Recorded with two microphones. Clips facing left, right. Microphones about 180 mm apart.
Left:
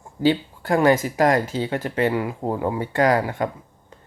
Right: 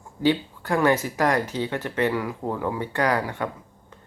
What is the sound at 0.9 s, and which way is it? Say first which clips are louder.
Speech: left 4 dB; 15° left (ahead or behind).